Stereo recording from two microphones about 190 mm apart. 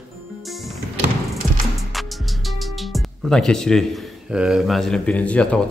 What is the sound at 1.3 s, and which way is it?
Music, centre (ahead or behind).